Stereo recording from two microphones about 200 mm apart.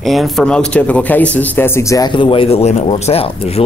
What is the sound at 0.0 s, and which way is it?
Speech, centre (ahead or behind).